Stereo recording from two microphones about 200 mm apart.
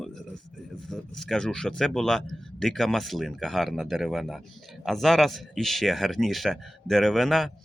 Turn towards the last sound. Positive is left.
turn(degrees=0)  # may be behind; listen again after turning